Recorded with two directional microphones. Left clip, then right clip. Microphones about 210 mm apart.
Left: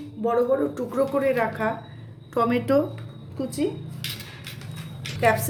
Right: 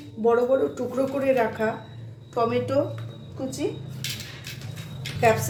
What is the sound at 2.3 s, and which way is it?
Speech, 50° left (ahead or behind).